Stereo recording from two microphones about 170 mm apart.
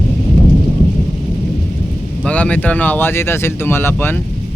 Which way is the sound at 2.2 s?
10° left (ahead or behind).